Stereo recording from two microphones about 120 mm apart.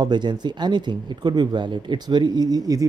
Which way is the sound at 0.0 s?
35° right (ahead or behind).